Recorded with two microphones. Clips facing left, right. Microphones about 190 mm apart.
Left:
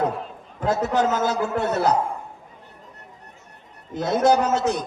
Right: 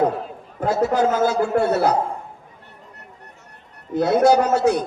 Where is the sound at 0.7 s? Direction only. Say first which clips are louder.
Right 2 dB; 10° right (ahead or behind).